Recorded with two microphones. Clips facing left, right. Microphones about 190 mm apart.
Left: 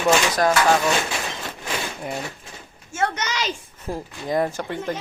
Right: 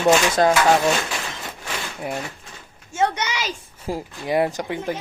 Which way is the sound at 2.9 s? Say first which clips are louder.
Right 2 dB; 15° right (ahead or behind).